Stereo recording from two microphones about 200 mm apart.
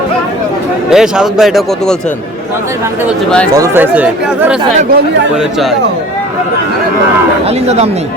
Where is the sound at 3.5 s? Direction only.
15° right (ahead or behind).